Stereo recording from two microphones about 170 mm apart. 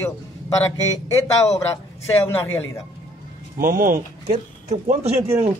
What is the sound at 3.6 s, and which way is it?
Speech, 50° right (ahead or behind).